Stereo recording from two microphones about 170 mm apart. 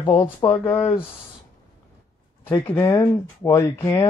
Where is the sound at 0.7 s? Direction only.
35° left (ahead or behind).